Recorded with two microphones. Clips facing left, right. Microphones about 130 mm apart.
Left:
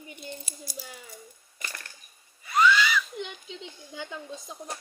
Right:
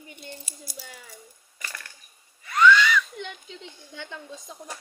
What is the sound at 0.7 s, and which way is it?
Coin, 10° left (ahead or behind).